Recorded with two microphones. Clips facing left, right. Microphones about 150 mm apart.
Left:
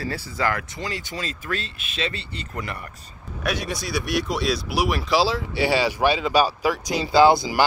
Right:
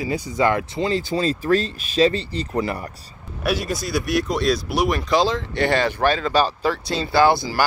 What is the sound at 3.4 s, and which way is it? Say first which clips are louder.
Speech: right 4 dB; centre (ahead or behind).